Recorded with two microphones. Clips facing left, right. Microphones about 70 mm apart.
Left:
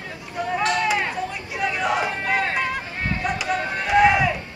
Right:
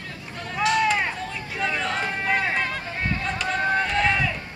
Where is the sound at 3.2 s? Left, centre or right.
Centre.